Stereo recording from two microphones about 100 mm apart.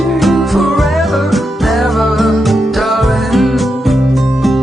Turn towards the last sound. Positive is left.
turn(degrees=0)  # may be behind; listen again after turning